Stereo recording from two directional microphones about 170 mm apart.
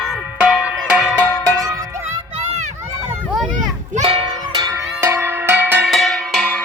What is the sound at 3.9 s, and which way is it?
Music, 35° right (ahead or behind).